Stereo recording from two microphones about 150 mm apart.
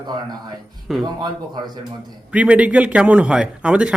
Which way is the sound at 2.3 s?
10° right (ahead or behind).